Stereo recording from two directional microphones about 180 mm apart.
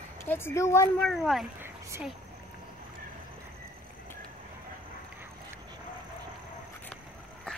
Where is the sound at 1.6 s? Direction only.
15° right (ahead or behind).